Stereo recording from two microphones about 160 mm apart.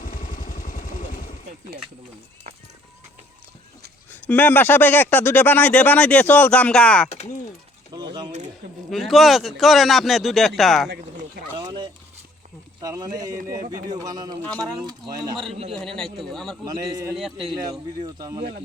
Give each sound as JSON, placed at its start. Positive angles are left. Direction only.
{"t": 0.0, "sound": "vehicle", "side_deg": 60}
{"t": 4.1, "sound": "speech", "side_deg": 10}
{"t": 7.1, "sound": "speech", "side_deg": 40}
{"t": 7.9, "sound": "mechanisms", "side_deg": -25}
{"t": 8.9, "sound": "speech", "side_deg": 0}
{"t": 11.5, "sound": "a sound", "side_deg": -30}
{"t": 12.8, "sound": "speech", "side_deg": -20}
{"t": 15.7, "sound": "speech", "side_deg": 0}
{"t": 16.6, "sound": "speech", "side_deg": -25}
{"t": 17.2, "sound": "speech", "side_deg": 0}
{"t": 17.5, "sound": "speech", "side_deg": -25}